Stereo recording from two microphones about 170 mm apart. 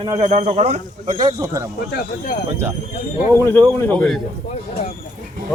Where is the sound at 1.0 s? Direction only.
20° right (ahead or behind).